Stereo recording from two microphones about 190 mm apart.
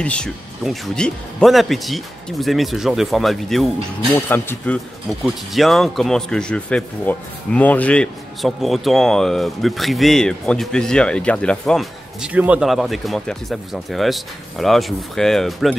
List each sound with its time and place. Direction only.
0.0 s speech: 5° left (ahead or behind)
4.3 s speech: 10° left (ahead or behind)
5.2 s speech: centre (ahead or behind)